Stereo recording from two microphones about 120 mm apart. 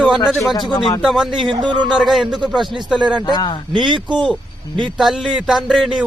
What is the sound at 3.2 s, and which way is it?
Speech, 35° left (ahead or behind).